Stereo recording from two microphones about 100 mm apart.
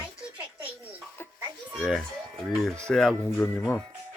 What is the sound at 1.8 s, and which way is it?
A child's voice, 5° left (ahead or behind).